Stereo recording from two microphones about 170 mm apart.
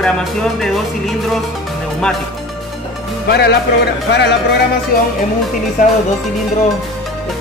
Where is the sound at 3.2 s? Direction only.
70° left (ahead or behind); by 4.4 s 90° left.